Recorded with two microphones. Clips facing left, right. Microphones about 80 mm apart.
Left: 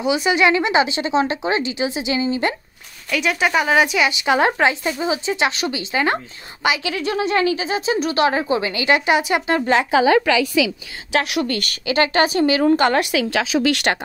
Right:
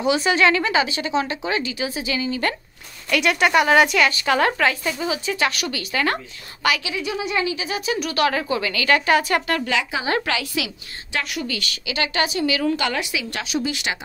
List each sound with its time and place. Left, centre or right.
0.0 s speech: centre; by 2.5 s left
3.1 s a woman's voice: centre
4.1 s speech: centre
6.8 s speech: left; by 9.4 s centre
9.7 s a woman's voice: left
11.1 s a woman's voice: left
13.0 s speech: left